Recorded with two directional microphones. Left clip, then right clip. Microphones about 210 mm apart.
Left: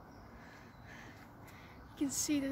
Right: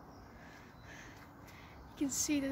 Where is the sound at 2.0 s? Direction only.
5° right (ahead or behind).